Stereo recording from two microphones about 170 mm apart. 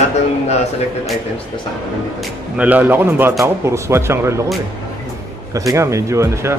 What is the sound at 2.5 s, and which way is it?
Speech, 10° right (ahead or behind).